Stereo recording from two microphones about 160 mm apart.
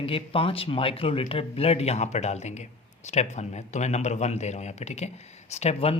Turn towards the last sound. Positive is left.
turn(degrees=40)  # may be behind; listen again after turning